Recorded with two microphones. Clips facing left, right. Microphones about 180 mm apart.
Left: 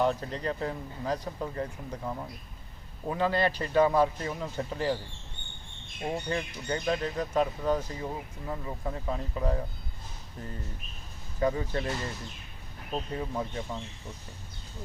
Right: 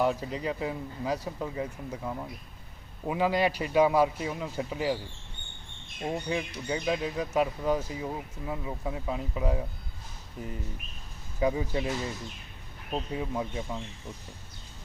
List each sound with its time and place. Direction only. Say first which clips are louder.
0.0 s speech: even; 5° right (ahead or behind)
6.2 s speech: right 1 dB; 5° right (ahead or behind)
12.9 s speech: right 1 dB; 10° right (ahead or behind)